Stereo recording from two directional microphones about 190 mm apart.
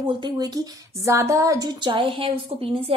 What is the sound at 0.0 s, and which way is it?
Speech, 25° right (ahead or behind).